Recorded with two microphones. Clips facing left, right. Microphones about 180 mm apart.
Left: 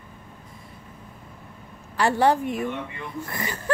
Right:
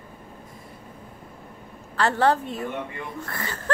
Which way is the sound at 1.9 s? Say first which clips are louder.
Left 1 dB; 15° left (ahead or behind).